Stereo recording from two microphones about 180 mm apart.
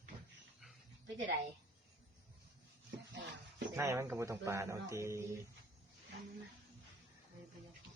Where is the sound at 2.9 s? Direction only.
75° right (ahead or behind).